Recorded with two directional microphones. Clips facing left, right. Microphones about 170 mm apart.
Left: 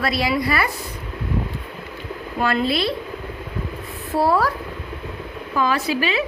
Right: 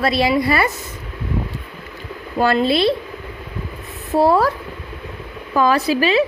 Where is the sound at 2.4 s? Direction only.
30° right (ahead or behind).